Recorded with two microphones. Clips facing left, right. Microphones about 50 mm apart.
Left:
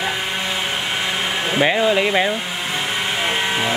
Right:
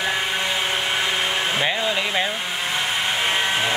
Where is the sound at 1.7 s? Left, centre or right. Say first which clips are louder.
Left 6 dB; centre.